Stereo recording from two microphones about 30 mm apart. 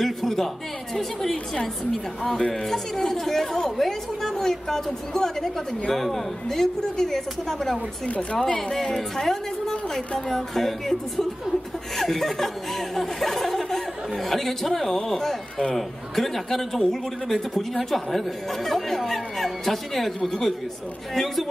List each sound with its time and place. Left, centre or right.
0.0 s a woman's voice: centre
2.5 s a woman's voice: centre
8.1 s speech: left
8.5 s a woman's voice: centre
20.2 s a woman's voice: centre
21.1 s a woman's voice: centre